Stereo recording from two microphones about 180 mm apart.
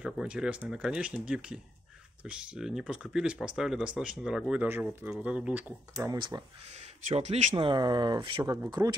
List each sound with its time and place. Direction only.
0.0 s speech: 5° right (ahead or behind); by 7.5 s 40° right (ahead or behind)
7.5 s speech: 25° right (ahead or behind)